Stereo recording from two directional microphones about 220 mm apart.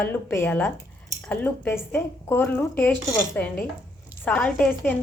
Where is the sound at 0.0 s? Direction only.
10° left (ahead or behind).